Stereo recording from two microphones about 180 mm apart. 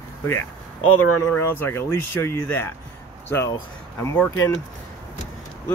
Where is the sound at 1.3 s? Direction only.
10° left (ahead or behind).